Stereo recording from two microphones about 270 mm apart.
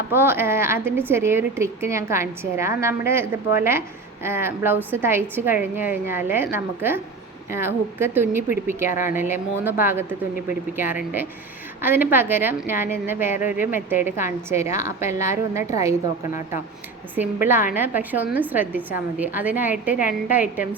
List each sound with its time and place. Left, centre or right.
0.1 s a woman's voice: centre
17.2 s a woman's voice: centre
20.0 s a woman's voice: left
20.3 s a woman's voice: centre